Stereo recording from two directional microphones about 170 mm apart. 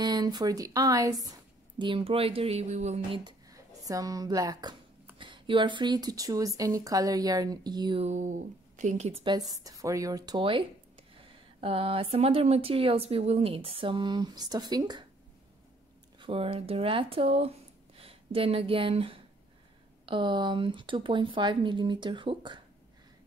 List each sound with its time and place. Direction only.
0.0 s a woman's voice: 25° right (ahead or behind); by 3.2 s 40° right (ahead or behind)
3.3 s speech: 20° right (ahead or behind)
8.0 s speech: 45° right (ahead or behind); by 15.0 s 25° right (ahead or behind)
16.2 s speech: 35° right (ahead or behind)